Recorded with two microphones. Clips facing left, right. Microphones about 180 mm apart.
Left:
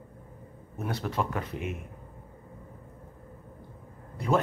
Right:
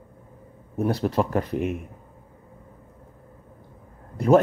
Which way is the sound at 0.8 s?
35° right (ahead or behind).